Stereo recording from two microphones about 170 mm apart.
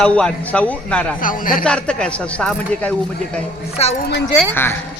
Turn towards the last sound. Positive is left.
turn(degrees=15)  # may be behind; listen again after turning